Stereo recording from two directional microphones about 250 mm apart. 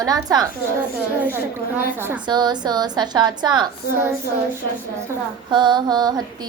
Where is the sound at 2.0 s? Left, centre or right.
Centre.